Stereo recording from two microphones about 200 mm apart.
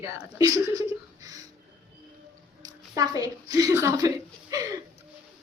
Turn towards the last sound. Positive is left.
turn(degrees=-15)  # may be behind; listen again after turning